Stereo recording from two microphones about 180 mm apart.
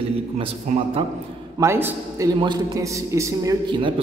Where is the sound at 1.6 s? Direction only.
15° right (ahead or behind).